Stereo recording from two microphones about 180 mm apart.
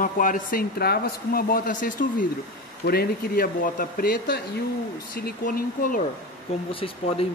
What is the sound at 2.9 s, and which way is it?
Speech, 60° left (ahead or behind).